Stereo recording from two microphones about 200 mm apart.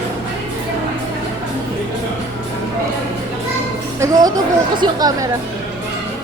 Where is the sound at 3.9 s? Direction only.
15° right (ahead or behind).